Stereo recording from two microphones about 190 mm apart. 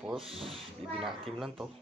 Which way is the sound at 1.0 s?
Centre (ahead or behind).